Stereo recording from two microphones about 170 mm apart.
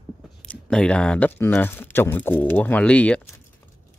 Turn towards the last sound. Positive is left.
turn(degrees=5)  # may be behind; listen again after turning